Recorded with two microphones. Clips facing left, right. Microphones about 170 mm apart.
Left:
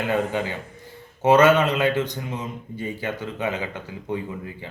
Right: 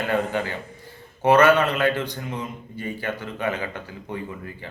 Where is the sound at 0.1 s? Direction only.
15° left (ahead or behind).